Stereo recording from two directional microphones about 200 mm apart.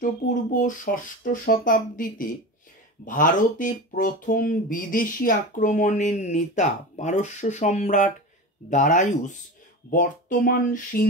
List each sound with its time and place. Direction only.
0.0 s speech: 40° left (ahead or behind)